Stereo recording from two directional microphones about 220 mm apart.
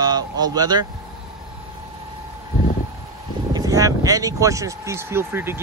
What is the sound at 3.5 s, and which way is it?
Speech, 15° right (ahead or behind).